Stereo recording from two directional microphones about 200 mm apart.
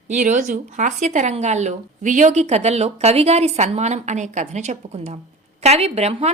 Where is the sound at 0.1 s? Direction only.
40° right (ahead or behind).